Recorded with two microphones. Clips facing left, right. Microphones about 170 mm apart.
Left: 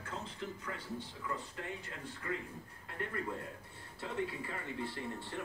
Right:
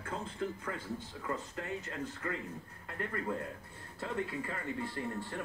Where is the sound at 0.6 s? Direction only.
45° right (ahead or behind).